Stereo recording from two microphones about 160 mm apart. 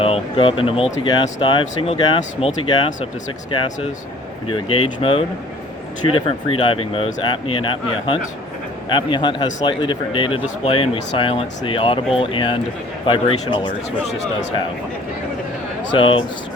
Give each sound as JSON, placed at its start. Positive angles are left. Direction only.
{"t": 0.0, "sound": "speech", "side_deg": 35}
{"t": 4.4, "sound": "speech", "side_deg": 35}
{"t": 16.0, "sound": "speech", "side_deg": 35}